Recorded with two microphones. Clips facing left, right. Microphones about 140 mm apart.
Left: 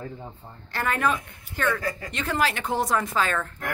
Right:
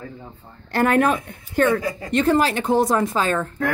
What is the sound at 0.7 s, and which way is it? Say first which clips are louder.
Speech: right 8 dB; 50° right (ahead or behind).